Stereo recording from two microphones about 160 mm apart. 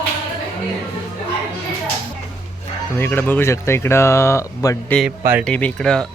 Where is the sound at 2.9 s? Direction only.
15° left (ahead or behind).